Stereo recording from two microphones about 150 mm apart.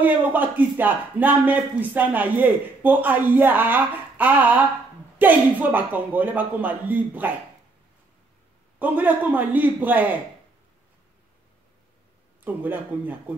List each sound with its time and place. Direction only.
0.0 s speech: 10° right (ahead or behind)
8.7 s speech: 10° right (ahead or behind)
12.4 s speech: 10° right (ahead or behind)